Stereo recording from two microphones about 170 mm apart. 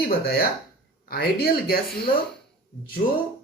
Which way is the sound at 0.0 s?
65° left (ahead or behind).